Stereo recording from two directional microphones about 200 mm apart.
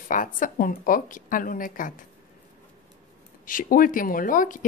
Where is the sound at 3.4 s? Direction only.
45° left (ahead or behind).